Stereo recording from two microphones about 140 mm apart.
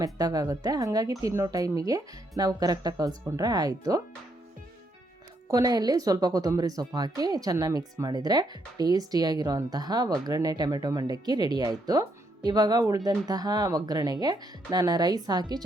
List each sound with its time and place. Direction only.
0.0 s a woman's voice: 25° right (ahead or behind)
5.5 s a woman's voice: 25° right (ahead or behind)